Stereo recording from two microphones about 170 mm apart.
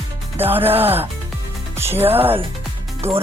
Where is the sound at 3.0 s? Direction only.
35° right (ahead or behind).